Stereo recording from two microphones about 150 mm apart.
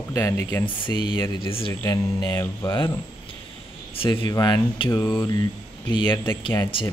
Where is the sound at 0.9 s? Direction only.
30° left (ahead or behind).